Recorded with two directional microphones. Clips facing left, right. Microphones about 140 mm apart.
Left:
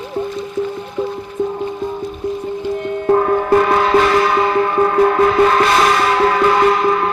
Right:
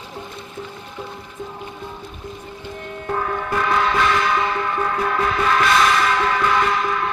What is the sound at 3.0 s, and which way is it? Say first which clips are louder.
Music: left 11 dB; 40° left (ahead or behind).